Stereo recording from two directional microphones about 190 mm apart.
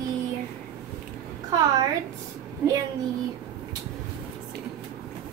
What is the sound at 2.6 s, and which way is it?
Speech, 10° right (ahead or behind).